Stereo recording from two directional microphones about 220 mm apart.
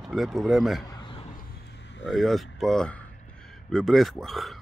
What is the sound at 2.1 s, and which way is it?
Speech, centre (ahead or behind).